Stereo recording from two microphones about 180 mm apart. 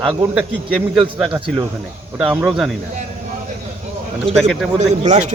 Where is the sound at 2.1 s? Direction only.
10° right (ahead or behind).